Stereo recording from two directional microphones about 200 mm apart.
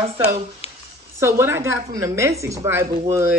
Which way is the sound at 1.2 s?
15° right (ahead or behind).